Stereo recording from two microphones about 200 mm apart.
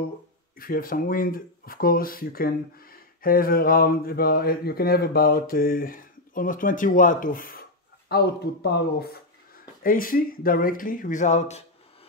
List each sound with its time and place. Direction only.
0.6 s speech: 45° left (ahead or behind)